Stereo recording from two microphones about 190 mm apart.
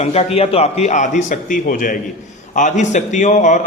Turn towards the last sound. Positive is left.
turn(degrees=40)  # may be behind; listen again after turning